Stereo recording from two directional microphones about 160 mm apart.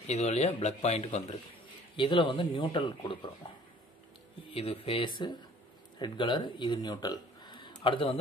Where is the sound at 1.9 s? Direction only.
30° left (ahead or behind).